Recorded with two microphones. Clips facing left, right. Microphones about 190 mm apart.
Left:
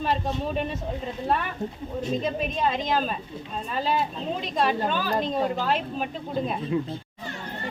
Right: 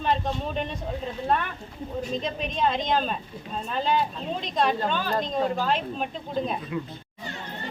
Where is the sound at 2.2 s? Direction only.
5° left (ahead or behind).